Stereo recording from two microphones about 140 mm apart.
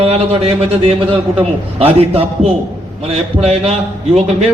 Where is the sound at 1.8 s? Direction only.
45° right (ahead or behind).